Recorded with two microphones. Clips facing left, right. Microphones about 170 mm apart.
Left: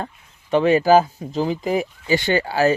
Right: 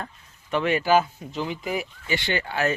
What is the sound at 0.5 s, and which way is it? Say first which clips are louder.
Speech: left 7 dB; 35° left (ahead or behind).